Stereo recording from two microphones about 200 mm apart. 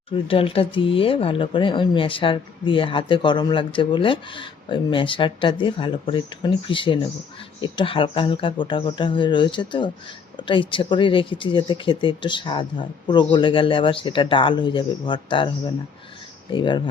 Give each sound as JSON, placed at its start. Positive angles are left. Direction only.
{"t": 0.3, "sound": "speech", "side_deg": 30}
{"t": 16.5, "sound": "speech", "side_deg": 25}